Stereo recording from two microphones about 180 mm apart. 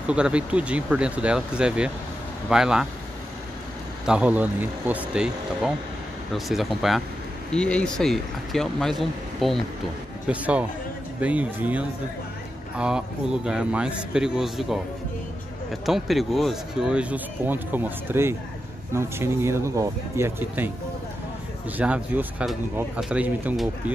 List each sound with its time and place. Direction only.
0.1 s a man's voice: 5° right (ahead or behind)
4.0 s a man's voice: 5° right (ahead or behind)
15.8 s speech: centre (ahead or behind)
21.7 s speech: 10° right (ahead or behind)